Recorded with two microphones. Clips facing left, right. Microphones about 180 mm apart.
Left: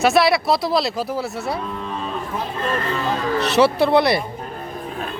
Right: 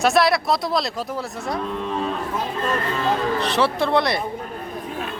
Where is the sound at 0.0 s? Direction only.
Centre (ahead or behind).